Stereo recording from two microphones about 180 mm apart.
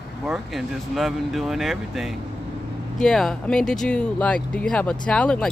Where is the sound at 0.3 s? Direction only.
Centre (ahead or behind).